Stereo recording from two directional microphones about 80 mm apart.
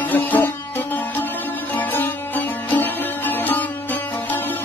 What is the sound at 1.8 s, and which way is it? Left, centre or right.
Music, left.